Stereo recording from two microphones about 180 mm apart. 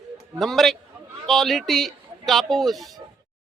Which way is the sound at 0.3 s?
Centre (ahead or behind).